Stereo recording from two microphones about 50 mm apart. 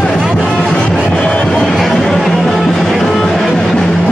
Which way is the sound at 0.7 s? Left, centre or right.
Centre.